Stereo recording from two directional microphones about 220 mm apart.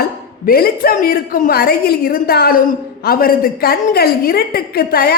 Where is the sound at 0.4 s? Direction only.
40° left (ahead or behind).